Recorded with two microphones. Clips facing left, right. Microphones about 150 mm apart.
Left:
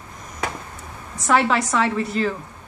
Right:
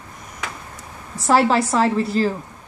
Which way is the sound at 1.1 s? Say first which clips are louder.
Right 3 dB; 30° right (ahead or behind).